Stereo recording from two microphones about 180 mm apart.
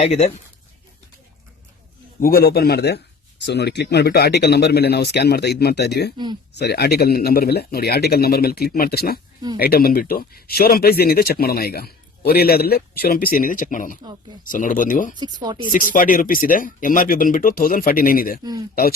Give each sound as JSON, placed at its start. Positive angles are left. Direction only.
{"t": 0.0, "sound": "speech", "side_deg": 35}
{"t": 2.2, "sound": "speech", "side_deg": 60}
{"t": 15.2, "sound": "speech", "side_deg": -25}
{"t": 15.9, "sound": "speech", "side_deg": 50}